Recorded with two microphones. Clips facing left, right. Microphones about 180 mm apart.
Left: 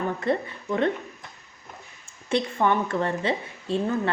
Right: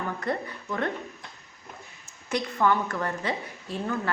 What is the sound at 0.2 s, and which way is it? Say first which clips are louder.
Speech: left 5 dB; 25° left (ahead or behind).